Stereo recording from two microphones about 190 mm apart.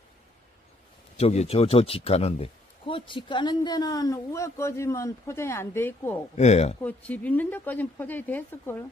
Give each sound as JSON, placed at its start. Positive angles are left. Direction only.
{"t": 1.1, "sound": "a man's voice", "side_deg": 35}
{"t": 6.3, "sound": "speech", "side_deg": 35}
{"t": 6.8, "sound": "speech", "side_deg": 10}